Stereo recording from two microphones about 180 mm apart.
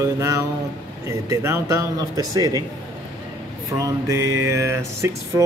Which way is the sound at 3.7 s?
15° right (ahead or behind).